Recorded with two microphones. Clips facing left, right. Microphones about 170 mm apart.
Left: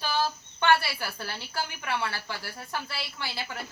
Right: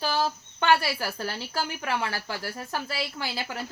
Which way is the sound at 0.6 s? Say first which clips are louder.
Right 1 dB; 40° right (ahead or behind).